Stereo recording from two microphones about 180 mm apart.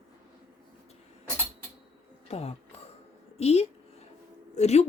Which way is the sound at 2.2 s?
35° left (ahead or behind).